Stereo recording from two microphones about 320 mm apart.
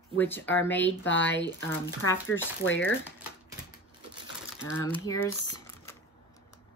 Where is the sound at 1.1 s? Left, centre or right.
Left.